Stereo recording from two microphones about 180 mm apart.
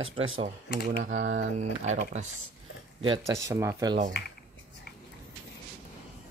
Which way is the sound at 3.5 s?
15° right (ahead or behind).